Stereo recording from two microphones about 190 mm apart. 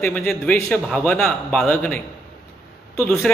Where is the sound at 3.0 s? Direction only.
Centre (ahead or behind).